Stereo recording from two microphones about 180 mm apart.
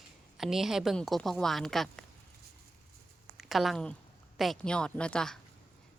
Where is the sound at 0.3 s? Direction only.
Centre (ahead or behind).